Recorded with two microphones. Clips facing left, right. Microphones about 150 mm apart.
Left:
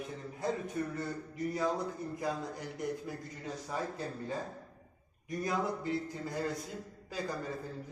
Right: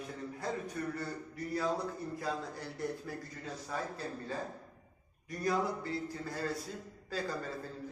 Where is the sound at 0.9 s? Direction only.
20° left (ahead or behind).